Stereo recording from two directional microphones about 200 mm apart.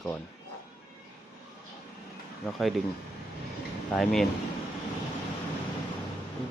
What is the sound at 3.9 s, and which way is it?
Speech, centre (ahead or behind).